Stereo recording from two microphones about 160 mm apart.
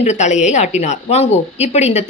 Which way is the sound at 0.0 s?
45° left (ahead or behind).